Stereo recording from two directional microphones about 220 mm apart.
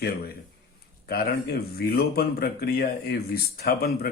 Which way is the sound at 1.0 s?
45° left (ahead or behind).